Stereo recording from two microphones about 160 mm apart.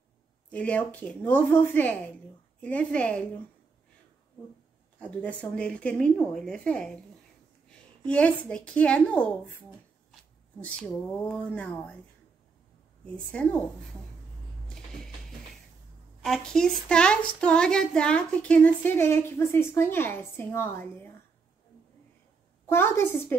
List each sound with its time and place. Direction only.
0.5 s a woman's voice: 10° left (ahead or behind)
5.2 s a woman's voice: 5° left (ahead or behind)
8.0 s a woman's voice: 10° left (ahead or behind)
13.0 s a woman's voice: 10° left (ahead or behind)
16.2 s a woman's voice: 5° left (ahead or behind)
22.7 s a woman's voice: 15° left (ahead or behind)